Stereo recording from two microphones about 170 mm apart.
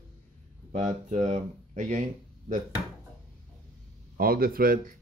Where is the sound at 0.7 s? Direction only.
45° right (ahead or behind).